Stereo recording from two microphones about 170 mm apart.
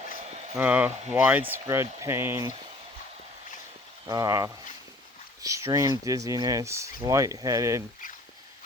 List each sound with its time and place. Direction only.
0.0 s a sound: 40° right (ahead or behind)
0.5 s speech: 10° right (ahead or behind)
4.1 s speech: 20° right (ahead or behind)